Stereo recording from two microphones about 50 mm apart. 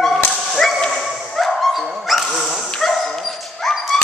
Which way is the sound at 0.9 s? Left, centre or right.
Centre.